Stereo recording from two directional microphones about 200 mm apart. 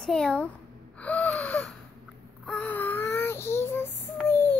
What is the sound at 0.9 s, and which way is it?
Gasp, 5° left (ahead or behind).